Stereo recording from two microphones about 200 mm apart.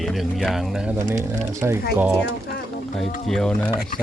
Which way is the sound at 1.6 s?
15° right (ahead or behind).